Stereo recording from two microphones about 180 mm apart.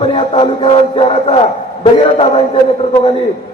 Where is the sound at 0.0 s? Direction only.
30° left (ahead or behind).